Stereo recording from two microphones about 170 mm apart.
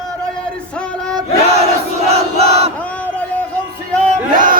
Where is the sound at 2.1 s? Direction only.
35° right (ahead or behind).